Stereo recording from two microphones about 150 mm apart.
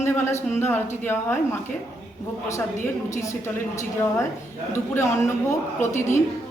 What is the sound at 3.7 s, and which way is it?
A woman's voice, 20° left (ahead or behind).